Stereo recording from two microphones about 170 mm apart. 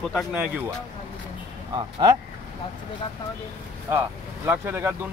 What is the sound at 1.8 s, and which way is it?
Speech, 25° right (ahead or behind).